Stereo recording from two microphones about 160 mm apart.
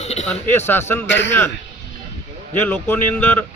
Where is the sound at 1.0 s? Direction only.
90° left.